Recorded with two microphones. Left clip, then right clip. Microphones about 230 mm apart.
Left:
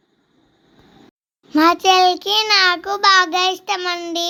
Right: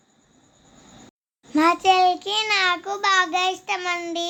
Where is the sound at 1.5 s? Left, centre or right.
Centre.